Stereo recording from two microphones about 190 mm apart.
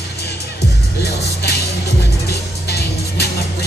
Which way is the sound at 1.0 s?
60° left (ahead or behind).